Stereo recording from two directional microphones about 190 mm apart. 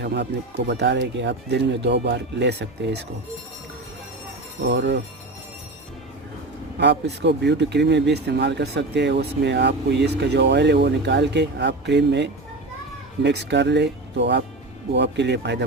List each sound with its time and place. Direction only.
0.0 s speech: 60° right (ahead or behind)
4.6 s speech: 65° right (ahead or behind)
6.7 s speech: 65° right (ahead or behind)